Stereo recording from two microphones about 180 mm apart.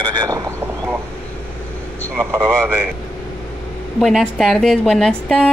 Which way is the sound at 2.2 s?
15° right (ahead or behind).